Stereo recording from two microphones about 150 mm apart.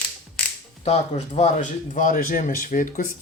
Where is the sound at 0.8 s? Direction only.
45° left (ahead or behind).